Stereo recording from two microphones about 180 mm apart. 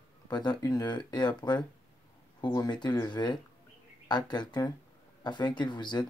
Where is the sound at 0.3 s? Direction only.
25° left (ahead or behind).